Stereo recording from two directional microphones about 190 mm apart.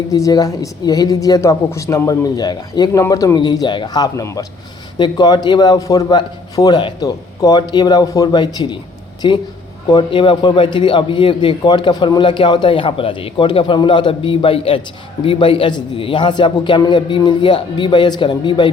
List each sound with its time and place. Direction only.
0.1 s a man's voice: 20° left (ahead or behind)